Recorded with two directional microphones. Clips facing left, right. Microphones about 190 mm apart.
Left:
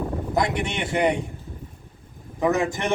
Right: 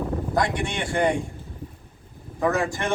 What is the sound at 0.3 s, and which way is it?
Speech, 20° left (ahead or behind).